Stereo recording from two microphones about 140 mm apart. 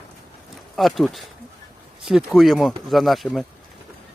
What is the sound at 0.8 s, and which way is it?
Speech, centre (ahead or behind).